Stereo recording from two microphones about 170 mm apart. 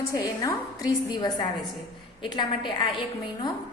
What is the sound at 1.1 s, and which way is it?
A woman's voice, 25° left (ahead or behind).